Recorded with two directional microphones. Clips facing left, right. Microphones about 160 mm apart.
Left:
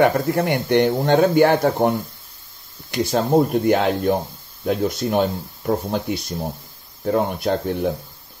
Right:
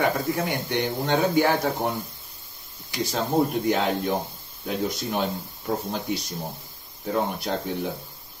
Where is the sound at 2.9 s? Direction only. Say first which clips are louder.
Left 6 dB; 50° left (ahead or behind).